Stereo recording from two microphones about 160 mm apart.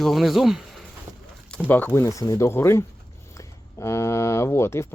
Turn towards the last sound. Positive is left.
turn(degrees=15)  # may be behind; listen again after turning